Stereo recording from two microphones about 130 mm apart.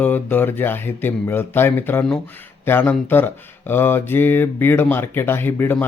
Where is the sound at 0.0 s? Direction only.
15° left (ahead or behind).